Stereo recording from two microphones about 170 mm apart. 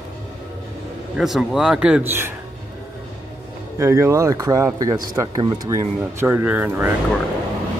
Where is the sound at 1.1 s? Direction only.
Centre (ahead or behind).